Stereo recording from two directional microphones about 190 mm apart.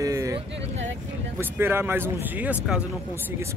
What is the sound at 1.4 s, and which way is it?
A man's voice, 10° right (ahead or behind).